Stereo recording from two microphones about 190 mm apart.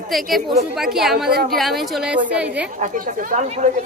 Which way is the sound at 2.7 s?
45° right (ahead or behind).